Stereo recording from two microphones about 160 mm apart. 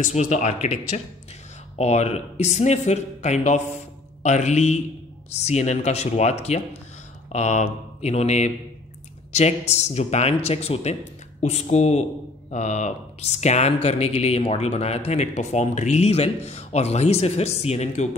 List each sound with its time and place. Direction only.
0.0 s speech: 45° left (ahead or behind)